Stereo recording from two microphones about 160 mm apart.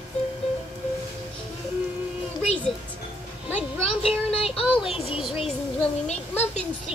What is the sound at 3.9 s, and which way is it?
Child singing, 40° left (ahead or behind).